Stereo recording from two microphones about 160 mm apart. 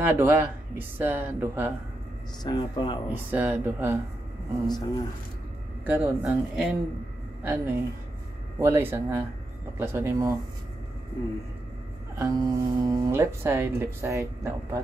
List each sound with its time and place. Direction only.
0.0 s speech: 10° right (ahead or behind)
2.4 s speech: 30° left (ahead or behind)
3.1 s speech: 10° right (ahead or behind)
4.6 s speech: 25° left (ahead or behind)
5.9 s speech: 10° right (ahead or behind)
12.2 s speech: 20° right (ahead or behind)